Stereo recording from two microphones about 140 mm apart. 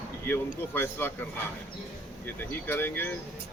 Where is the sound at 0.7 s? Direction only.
15° left (ahead or behind).